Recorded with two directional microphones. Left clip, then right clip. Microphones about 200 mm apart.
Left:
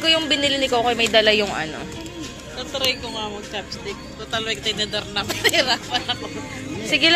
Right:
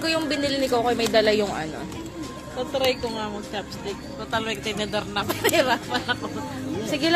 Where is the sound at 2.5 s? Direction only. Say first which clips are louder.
Even; 50° right (ahead or behind).